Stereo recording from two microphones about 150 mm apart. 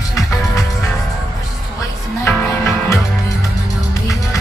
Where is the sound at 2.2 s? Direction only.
15° left (ahead or behind).